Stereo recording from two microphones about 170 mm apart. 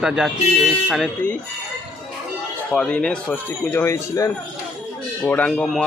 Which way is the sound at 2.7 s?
5° left (ahead or behind).